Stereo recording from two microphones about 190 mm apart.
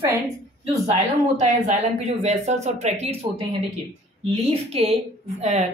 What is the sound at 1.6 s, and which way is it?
Speech, 35° right (ahead or behind).